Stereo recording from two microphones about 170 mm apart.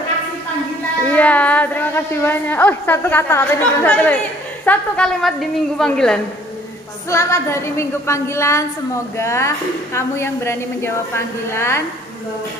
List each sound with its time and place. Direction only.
1.0 s a woman's voice: 10° left (ahead or behind)
7.1 s a woman's voice: 15° left (ahead or behind)